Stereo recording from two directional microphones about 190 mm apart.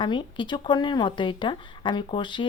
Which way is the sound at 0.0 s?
25° left (ahead or behind).